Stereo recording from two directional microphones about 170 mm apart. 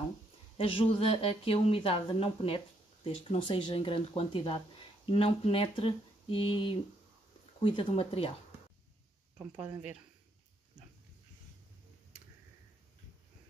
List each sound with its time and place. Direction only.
0.6 s speech: 35° left (ahead or behind)
9.6 s speech: 5° right (ahead or behind)